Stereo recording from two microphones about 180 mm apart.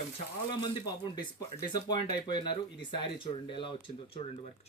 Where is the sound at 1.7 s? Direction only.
25° left (ahead or behind).